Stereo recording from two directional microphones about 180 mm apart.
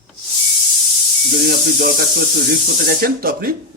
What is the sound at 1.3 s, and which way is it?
A man's voice, 55° right (ahead or behind).